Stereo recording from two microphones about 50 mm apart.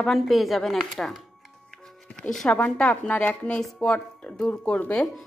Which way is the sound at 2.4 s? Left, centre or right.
Left.